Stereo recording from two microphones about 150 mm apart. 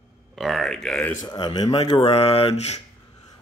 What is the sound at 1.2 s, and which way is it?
Speech, 30° left (ahead or behind).